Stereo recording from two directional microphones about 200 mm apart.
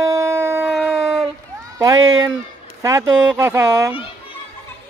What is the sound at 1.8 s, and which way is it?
Speech, 20° right (ahead or behind).